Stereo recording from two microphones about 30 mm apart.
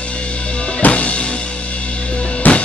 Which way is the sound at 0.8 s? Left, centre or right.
Left.